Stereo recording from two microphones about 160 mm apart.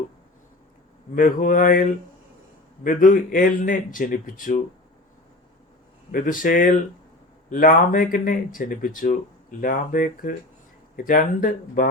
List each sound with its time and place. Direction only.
1.1 s speech: 55° left (ahead or behind)
6.1 s speech: 60° left (ahead or behind)